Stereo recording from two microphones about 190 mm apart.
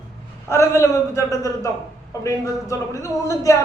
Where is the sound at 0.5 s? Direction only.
15° left (ahead or behind).